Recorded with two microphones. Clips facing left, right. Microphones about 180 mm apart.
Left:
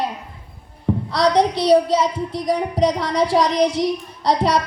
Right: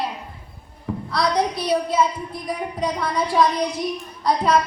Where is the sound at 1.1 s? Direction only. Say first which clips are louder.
Left 4 dB; 75° left (ahead or behind).